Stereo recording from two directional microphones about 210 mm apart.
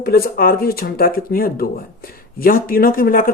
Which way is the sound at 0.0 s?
45° left (ahead or behind).